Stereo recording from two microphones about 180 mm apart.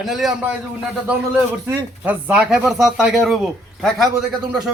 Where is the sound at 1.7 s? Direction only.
10° right (ahead or behind).